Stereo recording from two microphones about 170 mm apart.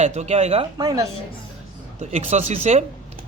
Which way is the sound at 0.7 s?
25° right (ahead or behind).